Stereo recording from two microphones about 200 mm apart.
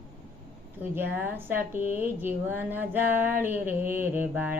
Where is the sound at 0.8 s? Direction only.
10° right (ahead or behind).